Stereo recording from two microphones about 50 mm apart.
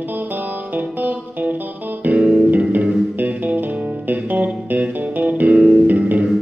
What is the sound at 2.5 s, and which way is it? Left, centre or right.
Music, right.